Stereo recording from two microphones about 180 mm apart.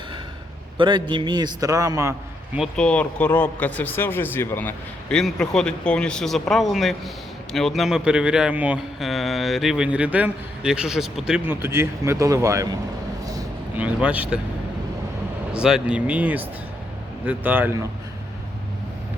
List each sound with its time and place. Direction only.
0.8 s a man's voice: 25° right (ahead or behind)
2.6 s a man's voice: 5° left (ahead or behind); by 12.6 s 15° right (ahead or behind)
13.2 s vehicle: 20° right (ahead or behind)
13.7 s speech: 10° right (ahead or behind)
15.5 s speech: 5° right (ahead or behind)